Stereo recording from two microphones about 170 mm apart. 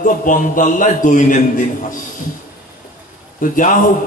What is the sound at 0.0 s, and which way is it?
A man's voice, 50° left (ahead or behind).